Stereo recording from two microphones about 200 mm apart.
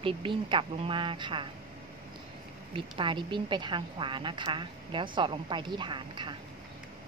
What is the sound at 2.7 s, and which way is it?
A woman's voice, 25° right (ahead or behind).